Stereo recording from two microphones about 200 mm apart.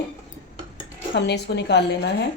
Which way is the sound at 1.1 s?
55° left (ahead or behind).